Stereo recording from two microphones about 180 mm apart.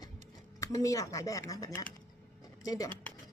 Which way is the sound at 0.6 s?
20° left (ahead or behind).